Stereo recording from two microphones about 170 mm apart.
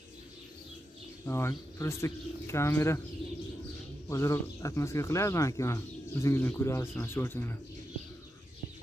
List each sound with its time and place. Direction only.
1.2 s speech: 15° left (ahead or behind)
4.1 s speech: 15° left (ahead or behind)